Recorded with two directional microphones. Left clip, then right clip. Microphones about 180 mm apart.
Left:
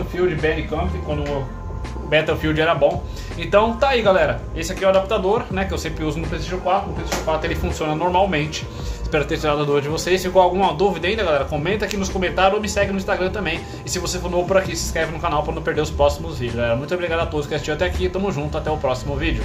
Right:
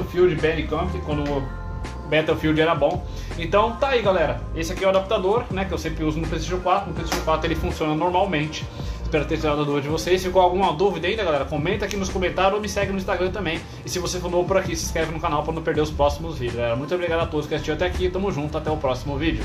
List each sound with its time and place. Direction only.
0.1 s speech: 15° right (ahead or behind)
2.0 s a man's voice: centre (ahead or behind)
6.3 s speech: 10° right (ahead or behind)
7.6 s a man's voice: centre (ahead or behind)